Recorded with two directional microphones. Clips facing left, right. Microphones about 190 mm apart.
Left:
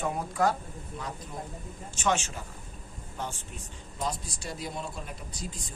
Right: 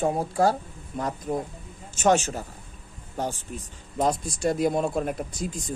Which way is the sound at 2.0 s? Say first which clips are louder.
Right 8 dB; 40° right (ahead or behind).